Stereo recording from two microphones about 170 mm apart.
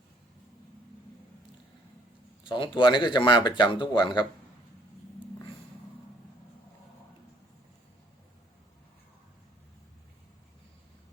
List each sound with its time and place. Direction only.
2.4 s speech: 30° left (ahead or behind)